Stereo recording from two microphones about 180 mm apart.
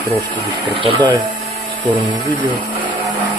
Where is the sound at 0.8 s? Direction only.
25° right (ahead or behind).